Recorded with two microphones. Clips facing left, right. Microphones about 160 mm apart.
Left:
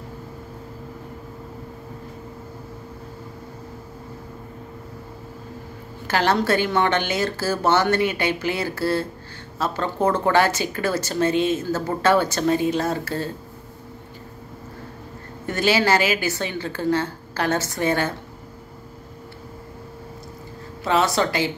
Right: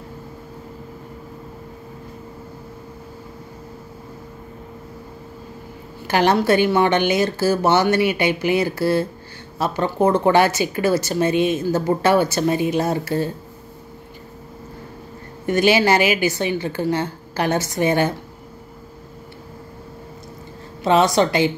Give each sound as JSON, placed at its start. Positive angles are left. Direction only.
{"t": 6.0, "sound": "speech", "side_deg": -15}
{"t": 15.4, "sound": "speech", "side_deg": -15}
{"t": 20.8, "sound": "a woman's voice", "side_deg": -20}